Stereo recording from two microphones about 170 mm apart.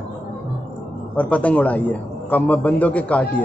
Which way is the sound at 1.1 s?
10° left (ahead or behind).